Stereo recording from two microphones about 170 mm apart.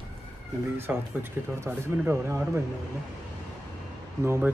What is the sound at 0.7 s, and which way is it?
A man's voice, 10° right (ahead or behind).